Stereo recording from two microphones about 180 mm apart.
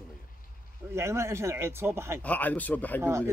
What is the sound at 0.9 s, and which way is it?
Speech, 15° right (ahead or behind).